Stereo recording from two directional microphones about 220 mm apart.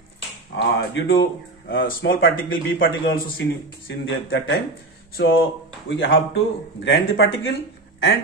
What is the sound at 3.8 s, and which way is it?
Speech, 60° left (ahead or behind).